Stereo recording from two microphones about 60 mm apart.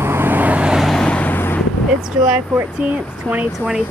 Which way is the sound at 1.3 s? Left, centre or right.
Left.